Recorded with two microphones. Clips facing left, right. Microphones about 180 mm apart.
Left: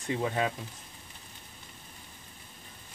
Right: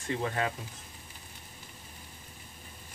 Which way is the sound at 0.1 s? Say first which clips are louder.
Left 2 dB; 15° left (ahead or behind).